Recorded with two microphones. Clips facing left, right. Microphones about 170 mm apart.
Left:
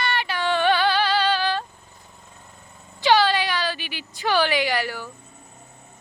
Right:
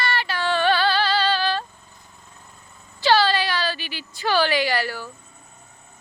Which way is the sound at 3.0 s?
15° left (ahead or behind).